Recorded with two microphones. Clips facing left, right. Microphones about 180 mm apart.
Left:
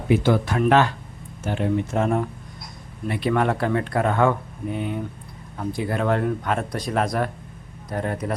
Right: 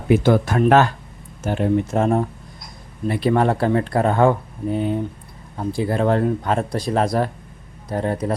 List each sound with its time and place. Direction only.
0.1 s a man's voice: 45° right (ahead or behind); by 8.4 s 30° right (ahead or behind)